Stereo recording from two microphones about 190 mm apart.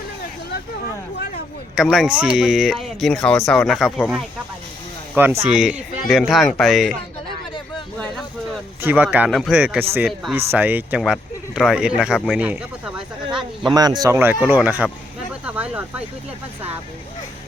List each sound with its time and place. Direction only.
1.7 s speech: centre (ahead or behind)
5.1 s speech: 10° right (ahead or behind)
8.8 s speech: 10° right (ahead or behind)
13.7 s speech: 20° right (ahead or behind)
15.3 s a sound: 5° right (ahead or behind)